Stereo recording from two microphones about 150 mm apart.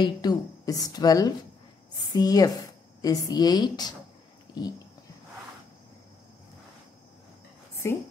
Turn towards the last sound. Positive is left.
turn(degrees=20)  # may be behind; listen again after turning